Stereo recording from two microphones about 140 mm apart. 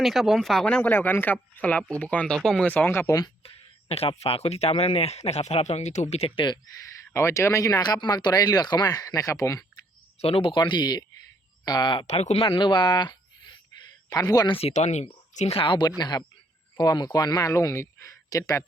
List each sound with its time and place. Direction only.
0.0 s speech: centre (ahead or behind); by 3.3 s 25° left (ahead or behind)
3.4 s a sound: 45° left (ahead or behind)
4.2 s speech: 45° left (ahead or behind)
7.1 s speech: 20° left (ahead or behind)
10.2 s speech: 45° left (ahead or behind)
12.0 s speech: 50° left (ahead or behind); by 14.5 s 25° left (ahead or behind)
14.6 s speech: 55° left (ahead or behind); by 18.6 s 25° left (ahead or behind)